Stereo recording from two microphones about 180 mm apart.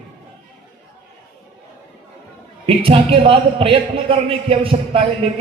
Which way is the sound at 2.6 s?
30° right (ahead or behind).